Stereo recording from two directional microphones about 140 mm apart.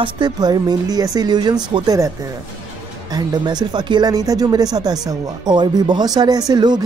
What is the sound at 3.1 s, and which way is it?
Speech, 30° right (ahead or behind).